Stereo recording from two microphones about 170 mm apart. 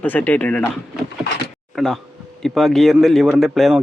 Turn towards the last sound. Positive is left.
turn(degrees=0)  # may be behind; listen again after turning